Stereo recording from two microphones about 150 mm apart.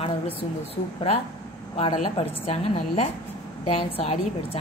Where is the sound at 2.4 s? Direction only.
40° left (ahead or behind).